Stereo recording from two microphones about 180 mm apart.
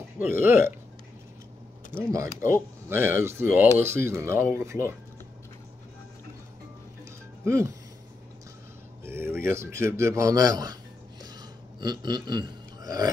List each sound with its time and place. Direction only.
0.3 s speech: 10° right (ahead or behind)
2.4 s speech: 15° right (ahead or behind)
7.4 s speech: 15° right (ahead or behind)
9.0 s a man's voice: 15° right (ahead or behind)